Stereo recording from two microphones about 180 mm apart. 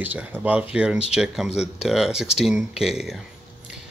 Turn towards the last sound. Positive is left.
turn(degrees=-5)  # may be behind; listen again after turning